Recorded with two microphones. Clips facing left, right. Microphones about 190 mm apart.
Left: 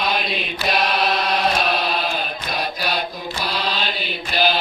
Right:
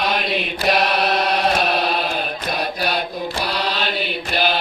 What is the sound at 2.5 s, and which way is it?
Mantra, 60° right (ahead or behind).